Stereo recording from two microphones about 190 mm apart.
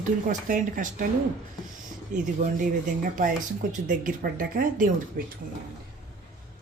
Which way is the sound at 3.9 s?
45° right (ahead or behind).